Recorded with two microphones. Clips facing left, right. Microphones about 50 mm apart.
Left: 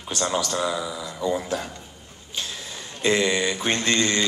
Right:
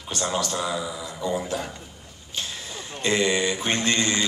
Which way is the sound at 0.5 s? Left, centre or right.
Centre.